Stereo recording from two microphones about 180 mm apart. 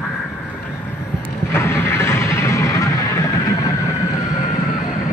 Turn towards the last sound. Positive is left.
turn(degrees=20)  # may be behind; listen again after turning